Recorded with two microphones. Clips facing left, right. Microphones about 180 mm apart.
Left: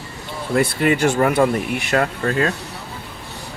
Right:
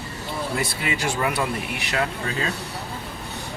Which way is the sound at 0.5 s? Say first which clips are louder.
Left 13 dB; 55° left (ahead or behind).